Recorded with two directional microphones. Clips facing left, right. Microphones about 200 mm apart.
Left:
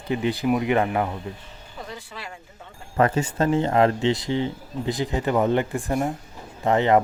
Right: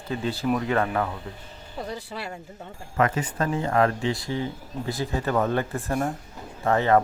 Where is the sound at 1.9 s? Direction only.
35° right (ahead or behind).